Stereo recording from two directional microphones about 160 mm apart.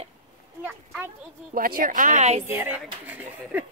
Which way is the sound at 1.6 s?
65° right (ahead or behind).